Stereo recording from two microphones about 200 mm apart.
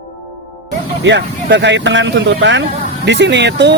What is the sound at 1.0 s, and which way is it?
Speech, 60° right (ahead or behind).